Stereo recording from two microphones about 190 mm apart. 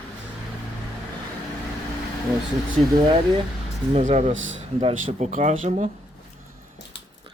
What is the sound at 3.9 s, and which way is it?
Speech, 35° right (ahead or behind).